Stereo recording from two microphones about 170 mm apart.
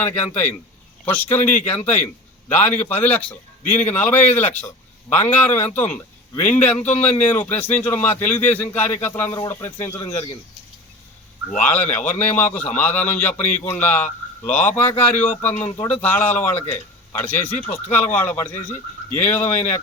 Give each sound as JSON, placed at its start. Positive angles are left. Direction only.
{"t": 0.0, "sound": "a man's voice", "side_deg": 10}
{"t": 11.6, "sound": "a man's voice", "side_deg": 10}